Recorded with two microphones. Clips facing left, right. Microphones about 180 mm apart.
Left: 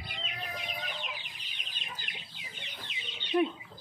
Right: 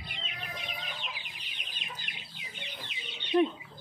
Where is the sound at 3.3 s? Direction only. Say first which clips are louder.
Right 2 dB; 10° right (ahead or behind).